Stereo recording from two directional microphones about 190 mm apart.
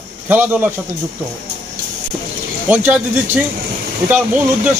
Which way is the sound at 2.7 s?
10° right (ahead or behind).